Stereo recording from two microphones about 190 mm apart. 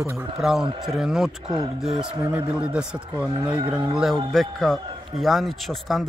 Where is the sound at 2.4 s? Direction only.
30° right (ahead or behind).